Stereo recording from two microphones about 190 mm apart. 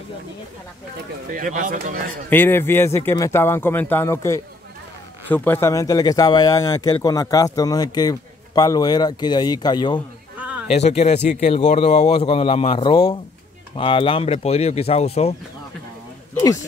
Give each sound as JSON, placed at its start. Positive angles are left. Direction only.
{"t": 1.3, "sound": "speech", "side_deg": -45}
{"t": 2.2, "sound": "speech", "side_deg": 10}
{"t": 10.7, "sound": "speech", "side_deg": 35}